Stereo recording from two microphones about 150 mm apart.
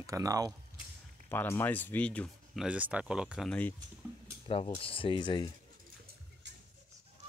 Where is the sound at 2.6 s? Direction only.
10° right (ahead or behind).